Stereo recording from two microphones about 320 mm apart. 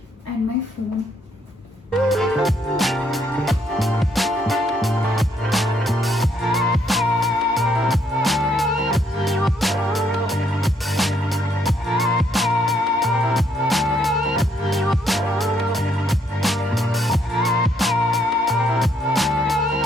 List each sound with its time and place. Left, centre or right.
1.9 s music: centre